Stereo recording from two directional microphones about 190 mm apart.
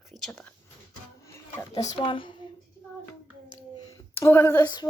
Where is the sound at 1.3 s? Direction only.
15° left (ahead or behind).